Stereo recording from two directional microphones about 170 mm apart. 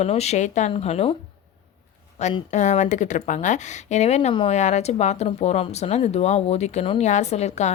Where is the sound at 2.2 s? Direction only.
40° left (ahead or behind).